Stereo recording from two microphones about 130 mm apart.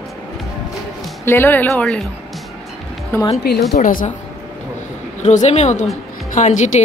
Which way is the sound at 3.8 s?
90° left.